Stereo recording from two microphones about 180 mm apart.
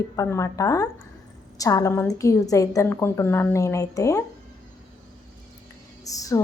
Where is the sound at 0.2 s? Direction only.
15° left (ahead or behind).